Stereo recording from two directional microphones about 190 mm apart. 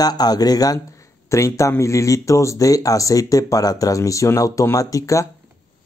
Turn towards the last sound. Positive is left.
turn(degrees=15)  # may be behind; listen again after turning